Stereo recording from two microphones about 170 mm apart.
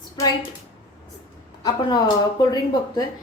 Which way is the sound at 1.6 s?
25° left (ahead or behind).